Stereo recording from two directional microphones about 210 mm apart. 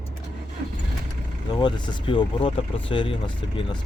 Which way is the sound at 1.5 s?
20° left (ahead or behind).